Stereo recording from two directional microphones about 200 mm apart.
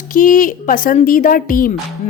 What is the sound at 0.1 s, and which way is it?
A woman's voice, 40° left (ahead or behind).